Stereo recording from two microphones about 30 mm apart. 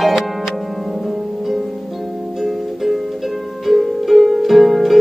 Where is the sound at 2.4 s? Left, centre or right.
Centre.